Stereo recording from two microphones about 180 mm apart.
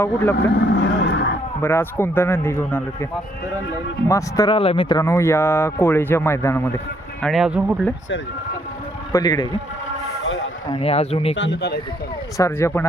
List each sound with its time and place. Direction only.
0.3 s vehicle: 80° left
1.6 s speech: 15° left (ahead or behind)
4.1 s speech: 20° left (ahead or behind)
7.2 s speech: centre (ahead or behind)
9.1 s a man's voice: 20° left (ahead or behind)
10.7 s speech: 30° left (ahead or behind)
11.3 s speech: 75° left (ahead or behind)
12.4 s speech: 15° left (ahead or behind)